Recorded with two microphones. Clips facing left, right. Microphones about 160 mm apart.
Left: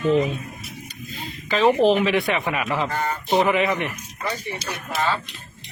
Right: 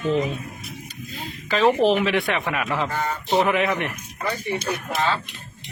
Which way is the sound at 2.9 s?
10° left (ahead or behind).